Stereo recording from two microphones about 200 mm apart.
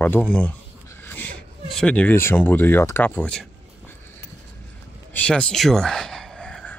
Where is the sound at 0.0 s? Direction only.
10° left (ahead or behind).